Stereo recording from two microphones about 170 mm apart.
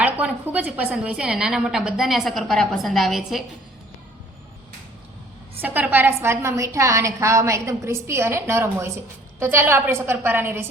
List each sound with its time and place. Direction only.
0.0 s a woman's voice: 10° right (ahead or behind)
5.5 s a woman's voice: 10° right (ahead or behind)